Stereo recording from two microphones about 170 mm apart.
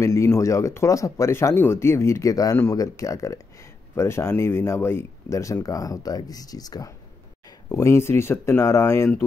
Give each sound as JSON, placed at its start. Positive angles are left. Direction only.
{"t": 0.0, "sound": "speech", "side_deg": 15}